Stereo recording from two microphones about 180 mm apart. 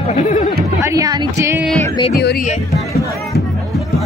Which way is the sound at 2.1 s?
60° left (ahead or behind).